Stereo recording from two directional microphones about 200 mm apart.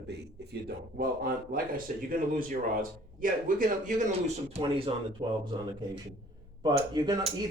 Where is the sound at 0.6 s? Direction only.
45° right (ahead or behind); by 5.4 s 20° right (ahead or behind).